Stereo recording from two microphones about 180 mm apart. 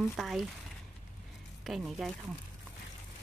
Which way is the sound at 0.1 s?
Centre (ahead or behind).